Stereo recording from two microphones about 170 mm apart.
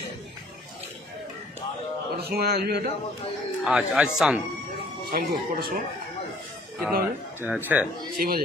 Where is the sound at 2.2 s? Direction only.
70° right (ahead or behind).